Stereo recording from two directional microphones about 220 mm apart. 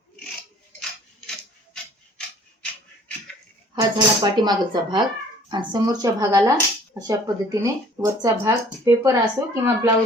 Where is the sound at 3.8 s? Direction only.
20° right (ahead or behind).